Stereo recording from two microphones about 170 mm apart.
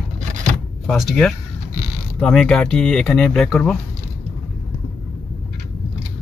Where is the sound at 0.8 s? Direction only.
Centre (ahead or behind).